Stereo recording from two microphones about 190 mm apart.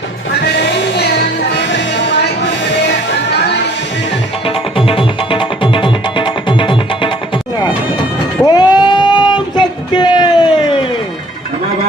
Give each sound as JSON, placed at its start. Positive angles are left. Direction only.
{"t": 0.4, "sound": "music", "side_deg": 60}
{"t": 4.4, "sound": "music", "side_deg": 30}
{"t": 8.4, "sound": "a sound", "side_deg": 20}